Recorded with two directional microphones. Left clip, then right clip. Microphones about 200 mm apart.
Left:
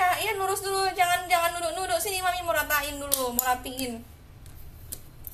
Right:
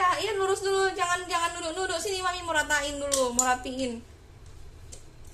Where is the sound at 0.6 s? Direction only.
25° right (ahead or behind).